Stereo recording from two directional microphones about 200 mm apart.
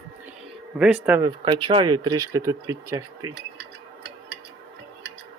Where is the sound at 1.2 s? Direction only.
25° right (ahead or behind).